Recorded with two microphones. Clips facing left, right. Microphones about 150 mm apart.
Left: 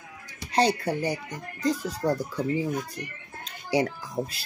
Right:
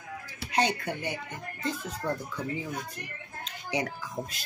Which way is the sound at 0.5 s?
35° left (ahead or behind).